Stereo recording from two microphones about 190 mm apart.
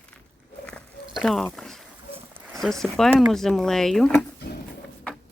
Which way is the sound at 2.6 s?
Centre (ahead or behind).